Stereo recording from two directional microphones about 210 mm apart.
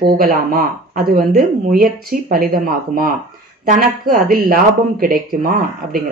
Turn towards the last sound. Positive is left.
turn(degrees=-45)  # may be behind; listen again after turning